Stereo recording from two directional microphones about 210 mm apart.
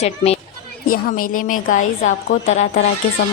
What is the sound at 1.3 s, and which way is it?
A woman's voice, 40° left (ahead or behind).